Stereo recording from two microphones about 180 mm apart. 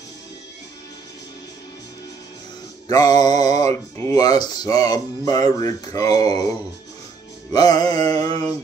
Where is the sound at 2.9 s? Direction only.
20° left (ahead or behind).